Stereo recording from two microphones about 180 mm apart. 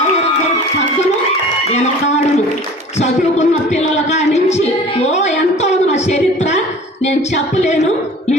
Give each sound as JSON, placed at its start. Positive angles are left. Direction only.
{"t": 1.7, "sound": "a man's voice", "side_deg": 40}
{"t": 3.0, "sound": "a sound", "side_deg": 40}
{"t": 7.0, "sound": "music", "side_deg": 40}